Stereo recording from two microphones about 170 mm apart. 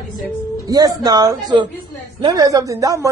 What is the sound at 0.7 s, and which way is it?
A man's voice, 25° right (ahead or behind).